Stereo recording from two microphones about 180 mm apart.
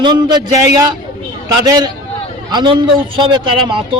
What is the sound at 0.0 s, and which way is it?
A man's voice, 25° right (ahead or behind).